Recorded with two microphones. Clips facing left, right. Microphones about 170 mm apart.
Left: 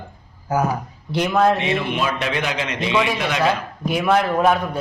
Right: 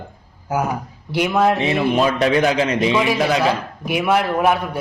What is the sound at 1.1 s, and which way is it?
Speech, 10° right (ahead or behind).